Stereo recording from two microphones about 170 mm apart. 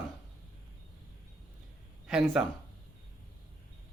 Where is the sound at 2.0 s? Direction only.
5° right (ahead or behind).